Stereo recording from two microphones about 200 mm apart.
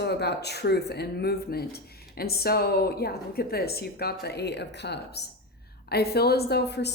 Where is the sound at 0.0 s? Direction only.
55° left (ahead or behind).